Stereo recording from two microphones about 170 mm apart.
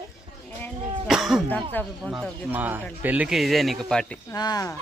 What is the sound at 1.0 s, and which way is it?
Cough, centre (ahead or behind).